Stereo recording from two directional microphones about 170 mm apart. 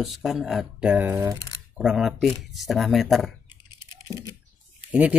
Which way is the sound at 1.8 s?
Centre (ahead or behind).